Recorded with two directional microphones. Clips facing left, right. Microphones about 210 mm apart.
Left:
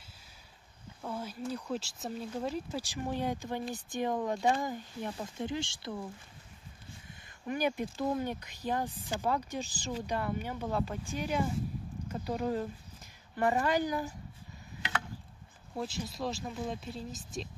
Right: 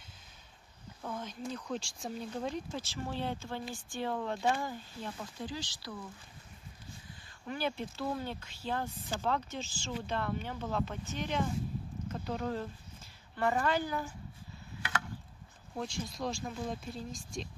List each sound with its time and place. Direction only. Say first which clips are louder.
1.0 s speech: left 2 dB; 10° left (ahead or behind); by 6.0 s 25° left (ahead or behind)
7.4 s speech: left 4 dB; 15° left (ahead or behind)
15.7 s speech: left 1 dB; 5° left (ahead or behind)